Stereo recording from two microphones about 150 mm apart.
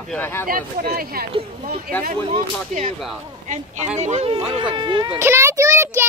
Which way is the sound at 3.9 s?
50° right (ahead or behind).